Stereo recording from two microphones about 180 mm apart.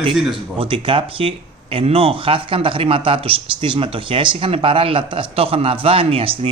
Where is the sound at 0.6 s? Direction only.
30° right (ahead or behind).